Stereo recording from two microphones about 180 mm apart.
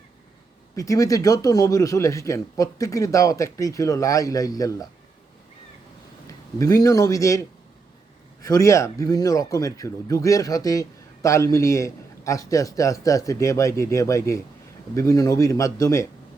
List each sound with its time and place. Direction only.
0.8 s a man's voice: 20° left (ahead or behind)
6.2 s speech: 20° left (ahead or behind)